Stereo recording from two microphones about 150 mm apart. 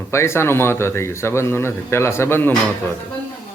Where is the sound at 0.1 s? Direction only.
15° left (ahead or behind).